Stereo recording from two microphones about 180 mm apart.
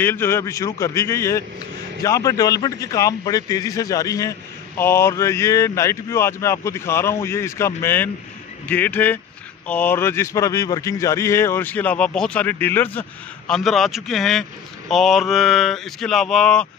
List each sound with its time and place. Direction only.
0.0 s a man's voice: 10° left (ahead or behind)